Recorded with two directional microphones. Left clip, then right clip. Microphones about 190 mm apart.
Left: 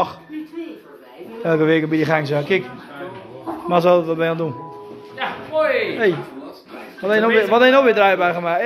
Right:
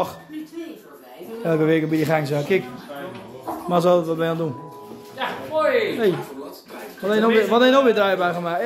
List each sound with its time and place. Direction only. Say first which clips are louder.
1.4 s a man's voice: left 3 dB; 10° right (ahead or behind)
3.6 s a man's voice: left 3 dB; 15° right (ahead or behind)
5.1 s a sound: left 2 dB; 15° right (ahead or behind)
7.0 s a man's voice: left 3 dB; 15° right (ahead or behind)